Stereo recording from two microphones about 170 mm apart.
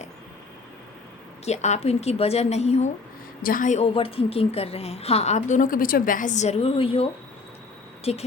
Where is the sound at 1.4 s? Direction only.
40° left (ahead or behind).